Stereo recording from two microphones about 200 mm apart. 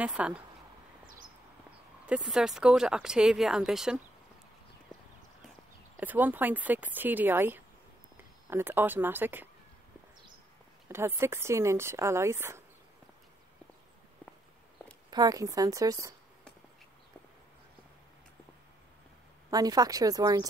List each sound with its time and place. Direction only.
0.0 s speech: 5° right (ahead or behind)
1.0 s a sound: 45° right (ahead or behind)
2.0 s speech: 5° right (ahead or behind)
5.9 s speech: 10° right (ahead or behind)
10.9 s speech: 10° right (ahead or behind)
14.2 s walk: 5° left (ahead or behind)
15.0 s speech: 20° right (ahead or behind)
19.5 s speech: 20° right (ahead or behind)